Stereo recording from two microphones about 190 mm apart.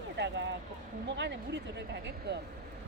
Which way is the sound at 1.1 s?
65° right (ahead or behind).